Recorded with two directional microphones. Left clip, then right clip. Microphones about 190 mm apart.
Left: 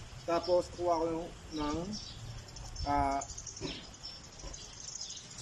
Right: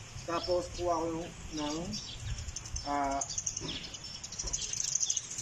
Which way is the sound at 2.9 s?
Centre (ahead or behind).